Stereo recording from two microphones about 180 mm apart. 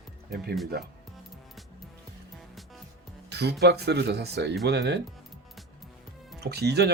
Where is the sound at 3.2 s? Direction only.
65° right (ahead or behind).